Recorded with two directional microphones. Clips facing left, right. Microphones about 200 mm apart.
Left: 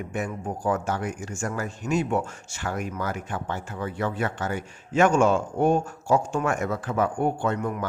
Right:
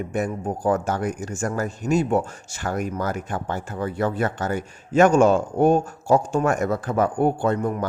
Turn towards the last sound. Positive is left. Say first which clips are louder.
# right 4 dB
turn(degrees=-35)  # may be behind; listen again after turning